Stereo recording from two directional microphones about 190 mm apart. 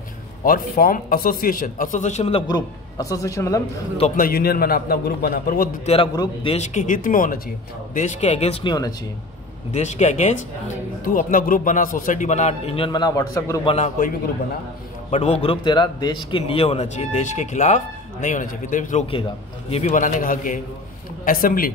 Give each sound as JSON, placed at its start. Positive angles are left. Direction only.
{"t": 0.5, "sound": "a man's voice", "side_deg": 50}
{"t": 2.4, "sound": "a man's voice", "side_deg": 20}
{"t": 4.2, "sound": "a man's voice", "side_deg": 50}
{"t": 6.1, "sound": "a man's voice", "side_deg": 30}
{"t": 9.8, "sound": "a man's voice", "side_deg": 35}
{"t": 13.7, "sound": "a man's voice", "side_deg": 35}